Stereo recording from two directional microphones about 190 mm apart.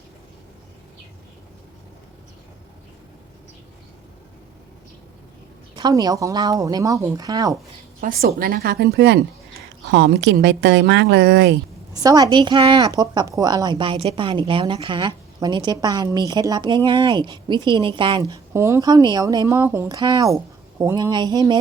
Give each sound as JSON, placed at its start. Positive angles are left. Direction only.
{"t": 5.7, "sound": "a woman's voice", "side_deg": -20}
{"t": 8.2, "sound": "a woman's voice", "side_deg": -50}
{"t": 12.0, "sound": "a woman's voice", "side_deg": -20}